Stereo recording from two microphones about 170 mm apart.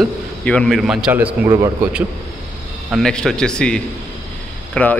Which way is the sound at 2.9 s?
5° left (ahead or behind).